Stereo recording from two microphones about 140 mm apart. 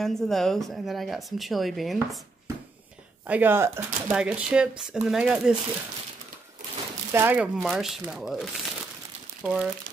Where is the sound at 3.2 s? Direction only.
10° right (ahead or behind).